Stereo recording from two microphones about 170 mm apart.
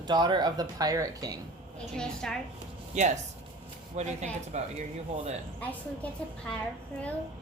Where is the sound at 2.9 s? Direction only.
45° right (ahead or behind).